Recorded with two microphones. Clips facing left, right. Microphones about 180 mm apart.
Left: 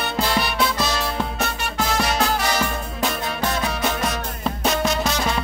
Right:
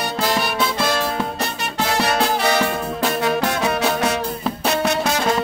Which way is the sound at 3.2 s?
75° right (ahead or behind).